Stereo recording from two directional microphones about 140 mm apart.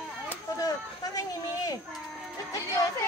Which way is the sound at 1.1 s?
25° left (ahead or behind).